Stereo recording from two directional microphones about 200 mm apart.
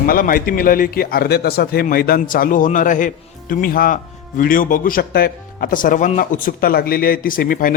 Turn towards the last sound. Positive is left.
turn(degrees=45)  # may be behind; listen again after turning